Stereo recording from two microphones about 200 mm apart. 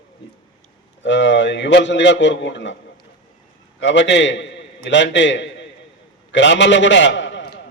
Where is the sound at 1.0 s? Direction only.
65° left (ahead or behind).